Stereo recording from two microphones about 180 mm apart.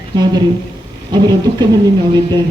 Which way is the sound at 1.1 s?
25° right (ahead or behind).